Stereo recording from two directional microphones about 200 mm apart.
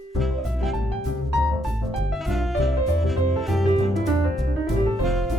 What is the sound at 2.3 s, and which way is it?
Music, centre (ahead or behind).